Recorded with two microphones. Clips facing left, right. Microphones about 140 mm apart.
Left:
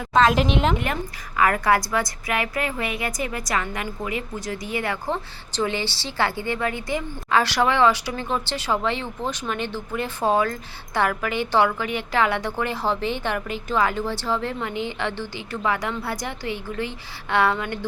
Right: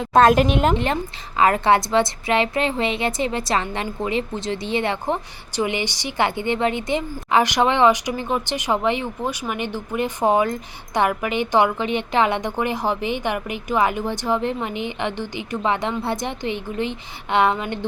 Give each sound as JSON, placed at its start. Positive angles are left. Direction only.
{"t": 0.1, "sound": "speech", "side_deg": -50}
{"t": 1.4, "sound": "a woman's voice", "side_deg": -25}